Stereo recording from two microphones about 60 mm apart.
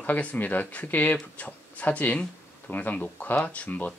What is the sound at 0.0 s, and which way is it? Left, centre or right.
Speech, left.